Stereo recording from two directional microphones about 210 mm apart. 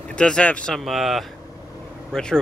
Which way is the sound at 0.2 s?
5° left (ahead or behind).